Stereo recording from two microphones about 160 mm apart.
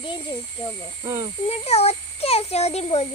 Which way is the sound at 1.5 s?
40° left (ahead or behind).